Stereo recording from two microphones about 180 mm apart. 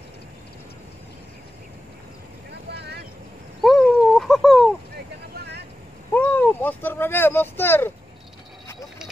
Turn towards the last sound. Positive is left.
turn(degrees=10)  # may be behind; listen again after turning